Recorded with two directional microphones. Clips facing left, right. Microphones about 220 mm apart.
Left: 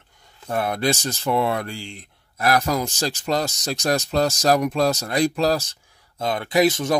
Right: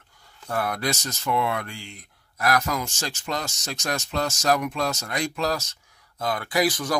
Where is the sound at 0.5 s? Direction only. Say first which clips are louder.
Left 4 dB; 25° left (ahead or behind).